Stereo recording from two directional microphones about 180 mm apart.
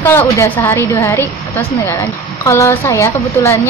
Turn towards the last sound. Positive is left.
turn(degrees=15)  # may be behind; listen again after turning